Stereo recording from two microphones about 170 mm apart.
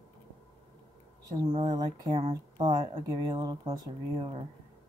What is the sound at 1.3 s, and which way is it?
Speech, 25° right (ahead or behind).